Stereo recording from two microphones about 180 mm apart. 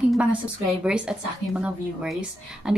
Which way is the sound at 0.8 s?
5° right (ahead or behind).